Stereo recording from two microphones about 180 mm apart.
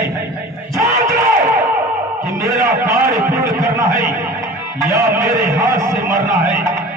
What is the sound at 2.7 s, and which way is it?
A man's voice, 15° right (ahead or behind).